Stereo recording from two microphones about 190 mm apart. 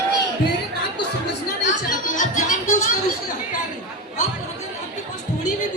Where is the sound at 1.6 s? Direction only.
40° left (ahead or behind).